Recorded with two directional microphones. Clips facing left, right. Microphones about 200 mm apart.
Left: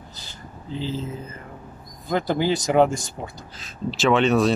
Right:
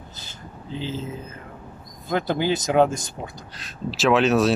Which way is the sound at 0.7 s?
20° right (ahead or behind).